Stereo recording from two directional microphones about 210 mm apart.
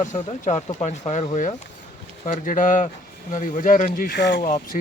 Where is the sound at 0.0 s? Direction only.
35° left (ahead or behind); by 4.4 s 55° left (ahead or behind).